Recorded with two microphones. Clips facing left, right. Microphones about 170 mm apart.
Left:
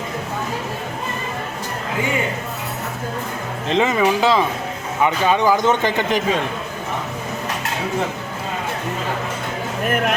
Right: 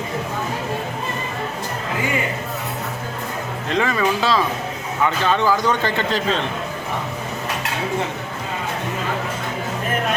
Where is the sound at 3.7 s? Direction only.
20° left (ahead or behind).